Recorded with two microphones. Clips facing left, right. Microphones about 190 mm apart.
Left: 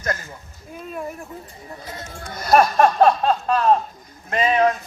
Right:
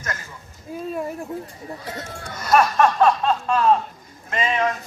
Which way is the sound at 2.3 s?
35° left (ahead or behind).